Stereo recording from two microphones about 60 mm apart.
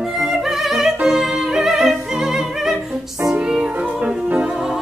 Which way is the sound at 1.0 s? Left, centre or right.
Centre.